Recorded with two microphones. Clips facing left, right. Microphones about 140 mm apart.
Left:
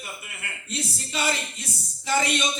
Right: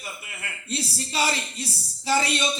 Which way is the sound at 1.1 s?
35° right (ahead or behind).